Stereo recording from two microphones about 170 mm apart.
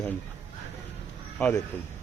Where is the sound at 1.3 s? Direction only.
10° left (ahead or behind).